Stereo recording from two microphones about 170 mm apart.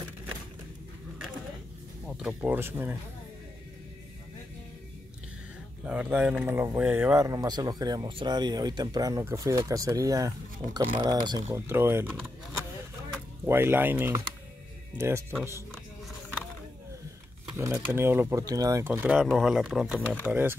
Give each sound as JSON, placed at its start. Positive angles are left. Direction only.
{"t": 2.0, "sound": "speech", "side_deg": -5}
{"t": 5.9, "sound": "speech", "side_deg": -5}
{"t": 13.5, "sound": "speech", "side_deg": -15}
{"t": 17.6, "sound": "speech", "side_deg": -15}